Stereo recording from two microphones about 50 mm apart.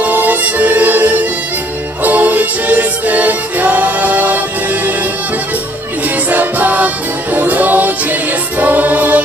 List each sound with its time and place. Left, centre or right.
0.0 s music: right
6.0 s music: right